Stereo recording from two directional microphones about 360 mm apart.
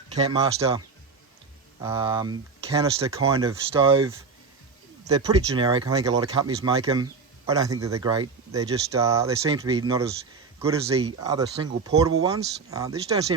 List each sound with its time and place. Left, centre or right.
0.1 s speech: centre
1.8 s speech: centre